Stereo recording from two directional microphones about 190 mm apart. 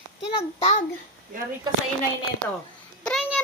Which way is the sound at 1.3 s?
45° right (ahead or behind).